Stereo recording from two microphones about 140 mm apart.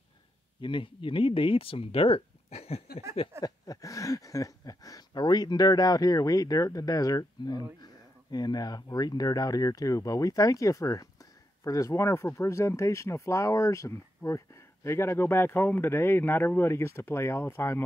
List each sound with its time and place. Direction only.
0.6 s speech: 35° left (ahead or behind)
3.3 s speech: 25° left (ahead or behind)